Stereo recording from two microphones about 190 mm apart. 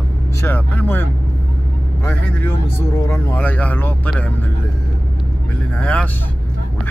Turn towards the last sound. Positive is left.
turn(degrees=5)  # may be behind; listen again after turning